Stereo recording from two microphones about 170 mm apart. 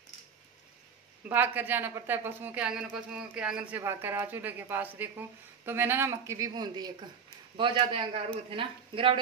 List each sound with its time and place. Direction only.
1.3 s a woman's voice: 10° right (ahead or behind); by 9.2 s 30° right (ahead or behind)